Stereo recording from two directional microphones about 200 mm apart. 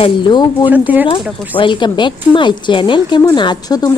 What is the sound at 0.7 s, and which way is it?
Speech, 10° right (ahead or behind).